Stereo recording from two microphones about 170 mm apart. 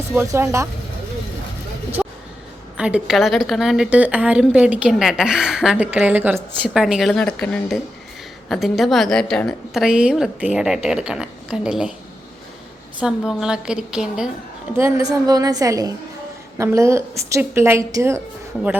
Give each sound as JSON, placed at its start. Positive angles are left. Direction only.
{"t": 0.2, "sound": "a woman's voice", "side_deg": -15}
{"t": 2.0, "sound": "gasp", "side_deg": 0}
{"t": 2.7, "sound": "a woman's voice", "side_deg": -5}
{"t": 13.0, "sound": "a woman's voice", "side_deg": -5}
{"t": 14.8, "sound": "a woman's voice", "side_deg": -15}